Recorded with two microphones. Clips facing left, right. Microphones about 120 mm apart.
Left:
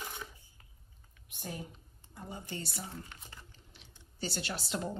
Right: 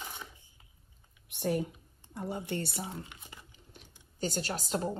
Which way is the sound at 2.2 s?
65° right (ahead or behind).